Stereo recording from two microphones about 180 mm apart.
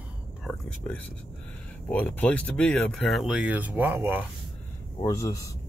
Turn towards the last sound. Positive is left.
turn(degrees=20)  # may be behind; listen again after turning